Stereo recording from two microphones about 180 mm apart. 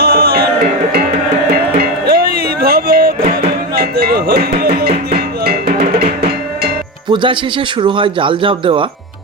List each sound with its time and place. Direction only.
0.0 s music: 60° right (ahead or behind)
1.8 s music: 60° right (ahead or behind)
3.8 s a sound: 60° right (ahead or behind)
4.8 s music: 60° right (ahead or behind)
7.1 s speech: 25° right (ahead or behind)